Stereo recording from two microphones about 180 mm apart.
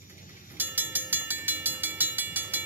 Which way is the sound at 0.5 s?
10° right (ahead or behind).